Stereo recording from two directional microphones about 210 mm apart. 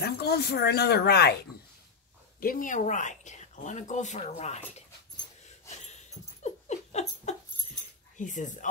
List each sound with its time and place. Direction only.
0.0 s speech: 50° left (ahead or behind)
2.4 s speech: 40° left (ahead or behind)
5.9 s dog: 30° left (ahead or behind)
8.2 s speech: 35° left (ahead or behind)